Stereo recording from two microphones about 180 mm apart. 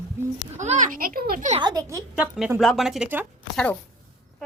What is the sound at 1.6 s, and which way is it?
Speech, 20° right (ahead or behind).